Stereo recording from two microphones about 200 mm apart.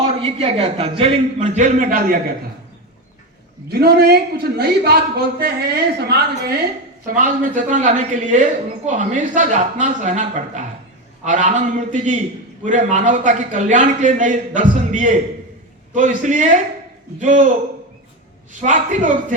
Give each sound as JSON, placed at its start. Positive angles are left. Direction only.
{"t": 0.2, "sound": "a man's voice", "side_deg": -30}
{"t": 3.7, "sound": "a man's voice", "side_deg": -50}
{"t": 7.1, "sound": "a man's voice", "side_deg": -40}
{"t": 18.5, "sound": "a man's voice", "side_deg": -40}